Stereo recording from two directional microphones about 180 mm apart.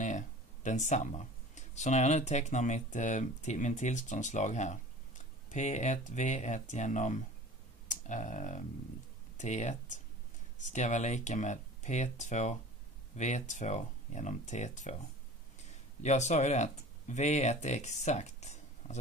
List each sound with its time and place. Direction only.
0.7 s speech: 40° left (ahead or behind)
7.9 s a sound: 40° left (ahead or behind)
9.4 s speech: 40° left (ahead or behind)
16.0 s speech: 40° left (ahead or behind)